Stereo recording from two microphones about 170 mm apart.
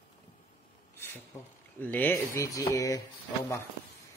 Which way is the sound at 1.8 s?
10° left (ahead or behind).